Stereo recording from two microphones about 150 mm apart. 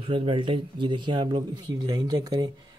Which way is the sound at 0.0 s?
35° right (ahead or behind).